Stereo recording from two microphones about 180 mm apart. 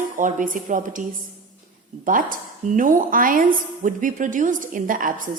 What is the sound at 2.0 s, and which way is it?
A woman's voice, 50° right (ahead or behind).